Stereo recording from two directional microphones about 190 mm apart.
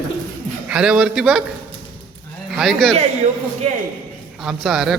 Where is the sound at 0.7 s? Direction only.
5° right (ahead or behind).